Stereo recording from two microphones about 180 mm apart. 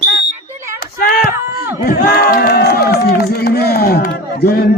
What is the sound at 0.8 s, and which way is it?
Speech, 55° left (ahead or behind).